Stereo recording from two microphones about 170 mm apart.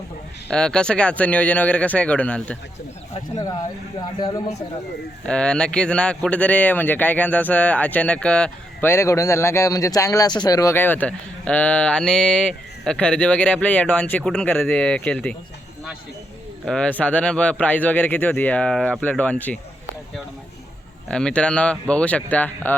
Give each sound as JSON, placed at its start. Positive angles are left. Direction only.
{"t": 0.5, "sound": "speech", "side_deg": 5}
{"t": 3.3, "sound": "speech", "side_deg": 20}
{"t": 5.2, "sound": "speech", "side_deg": 5}
{"t": 16.6, "sound": "speech", "side_deg": 5}
{"t": 21.1, "sound": "speech", "side_deg": 5}